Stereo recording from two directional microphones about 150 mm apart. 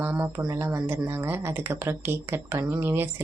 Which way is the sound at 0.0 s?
15° right (ahead or behind).